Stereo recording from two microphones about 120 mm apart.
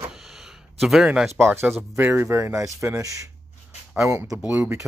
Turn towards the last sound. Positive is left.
turn(degrees=-20)  # may be behind; listen again after turning